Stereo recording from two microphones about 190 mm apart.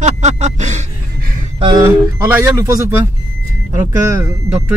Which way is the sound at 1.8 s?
10° right (ahead or behind).